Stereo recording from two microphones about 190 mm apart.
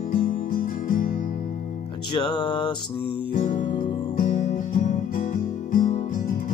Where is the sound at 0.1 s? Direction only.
45° left (ahead or behind).